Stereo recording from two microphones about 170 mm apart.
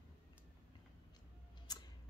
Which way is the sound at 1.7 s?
25° left (ahead or behind).